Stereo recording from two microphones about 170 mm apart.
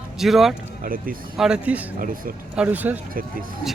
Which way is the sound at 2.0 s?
55° right (ahead or behind).